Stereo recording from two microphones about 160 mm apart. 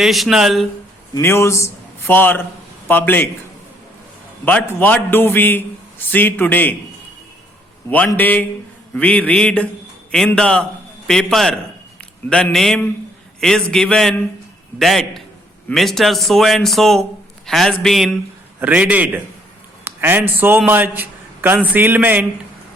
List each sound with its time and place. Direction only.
0.0 s a man's voice: centre (ahead or behind)
1.1 s a man's voice: 15° left (ahead or behind)
4.4 s a man's voice: 15° left (ahead or behind)
7.9 s a man's voice: 10° left (ahead or behind); by 22.3 s 10° right (ahead or behind)